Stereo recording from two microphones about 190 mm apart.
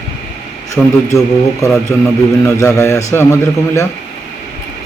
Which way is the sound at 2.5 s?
15° left (ahead or behind).